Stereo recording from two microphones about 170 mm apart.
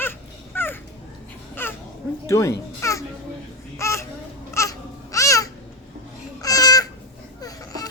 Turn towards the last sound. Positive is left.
turn(degrees=20)  # may be behind; listen again after turning